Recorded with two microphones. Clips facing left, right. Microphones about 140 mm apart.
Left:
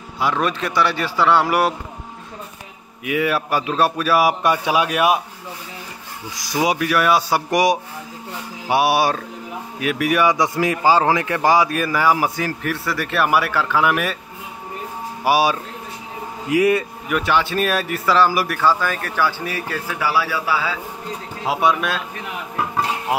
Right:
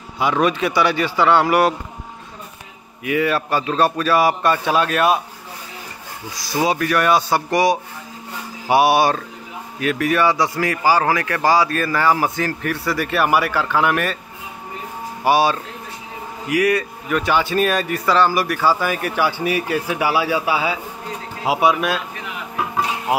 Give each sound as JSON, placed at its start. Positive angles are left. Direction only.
{"t": 0.2, "sound": "speech", "side_deg": -5}
{"t": 3.0, "sound": "a man's voice", "side_deg": 5}
{"t": 6.5, "sound": "a man's voice", "side_deg": 10}
{"t": 8.6, "sound": "a man's voice", "side_deg": 0}
{"t": 15.2, "sound": "a man's voice", "side_deg": 10}
{"t": 16.4, "sound": "speech", "side_deg": 25}
{"t": 17.1, "sound": "speech", "side_deg": 0}
{"t": 18.6, "sound": "a man's voice", "side_deg": -10}
{"t": 21.5, "sound": "speech", "side_deg": -5}